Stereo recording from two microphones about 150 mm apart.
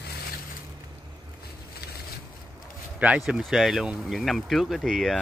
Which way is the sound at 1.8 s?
90° left.